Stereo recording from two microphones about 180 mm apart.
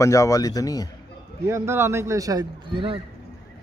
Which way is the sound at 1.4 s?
15° right (ahead or behind).